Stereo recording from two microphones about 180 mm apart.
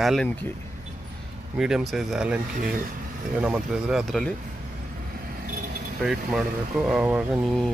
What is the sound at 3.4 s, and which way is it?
Speech, 5° right (ahead or behind).